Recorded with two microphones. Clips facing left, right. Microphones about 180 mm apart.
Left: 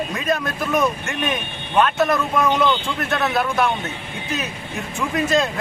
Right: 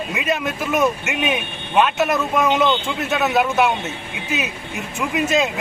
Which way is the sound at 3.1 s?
5° right (ahead or behind).